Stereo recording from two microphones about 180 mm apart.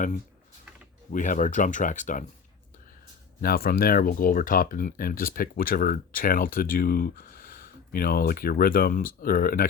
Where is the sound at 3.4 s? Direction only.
55° left (ahead or behind).